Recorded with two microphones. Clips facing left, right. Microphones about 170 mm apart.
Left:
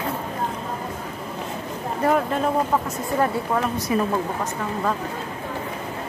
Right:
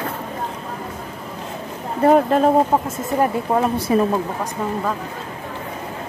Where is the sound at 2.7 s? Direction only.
30° right (ahead or behind).